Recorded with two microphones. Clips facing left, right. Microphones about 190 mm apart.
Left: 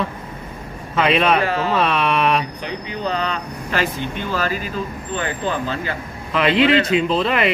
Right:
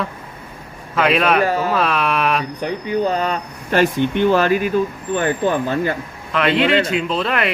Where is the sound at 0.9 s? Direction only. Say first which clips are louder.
Right 1 dB; centre (ahead or behind).